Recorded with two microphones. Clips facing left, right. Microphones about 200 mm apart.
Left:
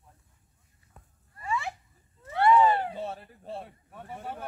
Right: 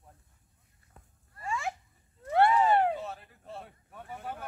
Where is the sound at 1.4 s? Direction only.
45° right (ahead or behind).